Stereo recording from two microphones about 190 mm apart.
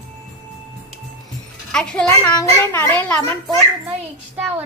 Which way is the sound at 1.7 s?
5° left (ahead or behind).